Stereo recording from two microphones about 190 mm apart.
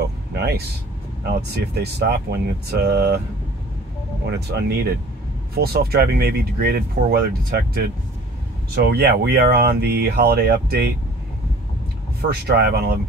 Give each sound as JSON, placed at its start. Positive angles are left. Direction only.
{"t": 0.0, "sound": "a sound", "side_deg": -60}
{"t": 1.3, "sound": "speech", "side_deg": -60}
{"t": 4.3, "sound": "speech", "side_deg": -60}
{"t": 12.2, "sound": "speech", "side_deg": -55}